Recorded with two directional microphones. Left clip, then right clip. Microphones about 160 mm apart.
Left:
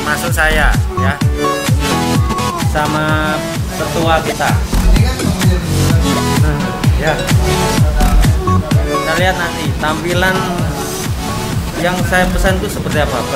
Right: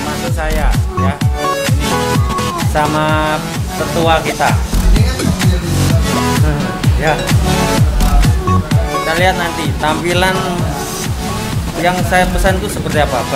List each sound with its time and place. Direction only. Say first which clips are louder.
0.4 s speech: left 6 dB; centre (ahead or behind)
2.7 s speech: right 3 dB; 15° right (ahead or behind)
9.2 s speech: right 1 dB; 15° right (ahead or behind)
11.8 s speech: right 1 dB; 15° right (ahead or behind)